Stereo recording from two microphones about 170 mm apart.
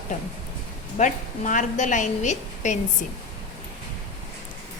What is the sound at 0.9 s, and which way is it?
A woman's voice, 50° left (ahead or behind).